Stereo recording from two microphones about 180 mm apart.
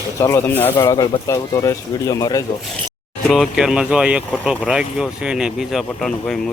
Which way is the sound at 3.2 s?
Centre (ahead or behind).